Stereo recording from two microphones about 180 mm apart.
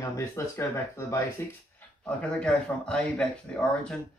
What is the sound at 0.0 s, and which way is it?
Speech, 15° left (ahead or behind).